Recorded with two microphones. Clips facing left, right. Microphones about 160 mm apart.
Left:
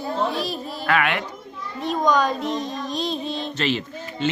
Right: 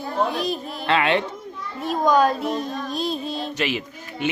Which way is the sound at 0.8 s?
25° right (ahead or behind).